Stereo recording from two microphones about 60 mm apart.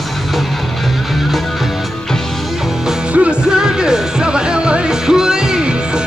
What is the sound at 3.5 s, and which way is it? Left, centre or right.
Music, centre.